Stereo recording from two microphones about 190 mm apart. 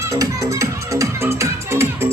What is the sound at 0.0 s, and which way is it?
Music, 15° right (ahead or behind).